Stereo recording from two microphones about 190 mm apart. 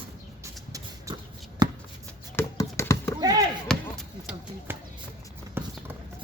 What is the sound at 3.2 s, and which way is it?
Chop, 20° right (ahead or behind).